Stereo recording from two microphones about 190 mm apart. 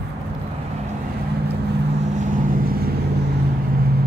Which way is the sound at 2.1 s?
45° right (ahead or behind).